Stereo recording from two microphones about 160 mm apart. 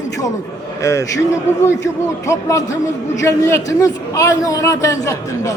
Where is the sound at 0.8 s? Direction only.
20° left (ahead or behind).